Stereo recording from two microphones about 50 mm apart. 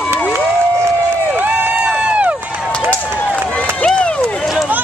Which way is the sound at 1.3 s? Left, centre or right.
Right.